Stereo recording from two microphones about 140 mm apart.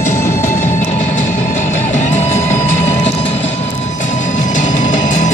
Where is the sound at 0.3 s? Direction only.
65° left (ahead or behind).